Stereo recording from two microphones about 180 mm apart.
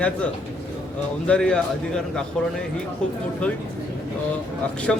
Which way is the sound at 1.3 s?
5° left (ahead or behind).